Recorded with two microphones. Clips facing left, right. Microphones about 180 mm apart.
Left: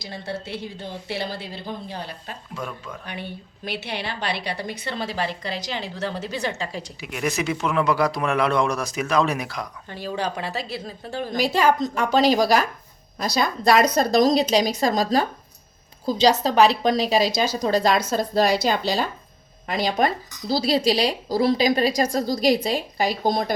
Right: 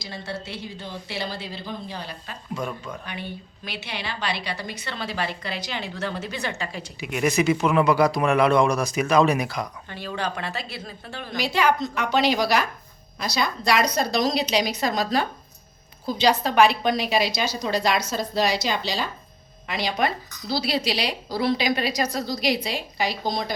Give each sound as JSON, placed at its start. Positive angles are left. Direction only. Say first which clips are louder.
{"t": 0.0, "sound": "a woman's voice", "louder": "left 2 dB", "side_deg": 55}
{"t": 2.6, "sound": "speech", "louder": "right 2 dB", "side_deg": 5}
{"t": 3.2, "sound": "a woman's voice", "louder": "left 1 dB", "side_deg": 55}
{"t": 7.0, "sound": "speech", "louder": "right 4 dB", "side_deg": 0}
{"t": 10.1, "sound": "a woman's voice", "louder": "left 2 dB", "side_deg": 10}
{"t": 10.5, "sound": "a woman's voice", "louder": "left 4 dB", "side_deg": 35}
{"t": 16.4, "sound": "a woman's voice", "louder": "left 2 dB", "side_deg": 35}